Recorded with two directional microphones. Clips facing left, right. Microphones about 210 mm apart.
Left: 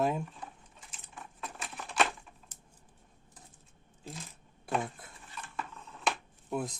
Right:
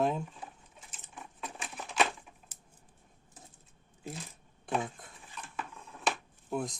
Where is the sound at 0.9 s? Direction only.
Centre (ahead or behind).